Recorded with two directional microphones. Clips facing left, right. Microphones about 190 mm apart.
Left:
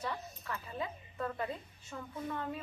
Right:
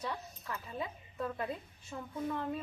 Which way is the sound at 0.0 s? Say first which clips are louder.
Even; 15° right (ahead or behind).